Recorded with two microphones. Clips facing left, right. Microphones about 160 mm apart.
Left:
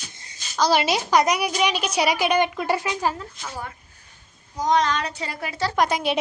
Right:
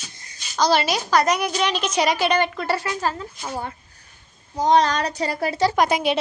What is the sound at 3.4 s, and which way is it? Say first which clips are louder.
Speech: right 6 dB; 30° right (ahead or behind).